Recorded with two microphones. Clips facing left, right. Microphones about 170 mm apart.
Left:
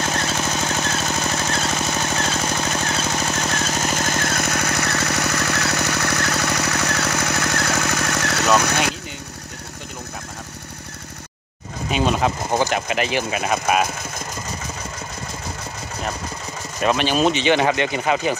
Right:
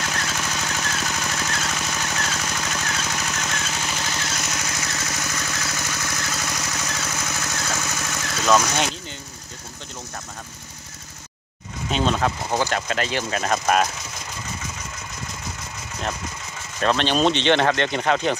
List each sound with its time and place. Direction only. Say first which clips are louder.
0.0 s jackhammer: left 5 dB; 30° left (ahead or behind); by 8.9 s 60° left (ahead or behind)
11.9 s speech: left 2 dB; 10° left (ahead or behind)
16.8 s speech: left 1 dB; 10° left (ahead or behind)